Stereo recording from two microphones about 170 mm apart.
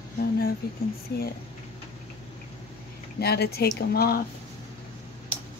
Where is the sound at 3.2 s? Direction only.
70° left (ahead or behind).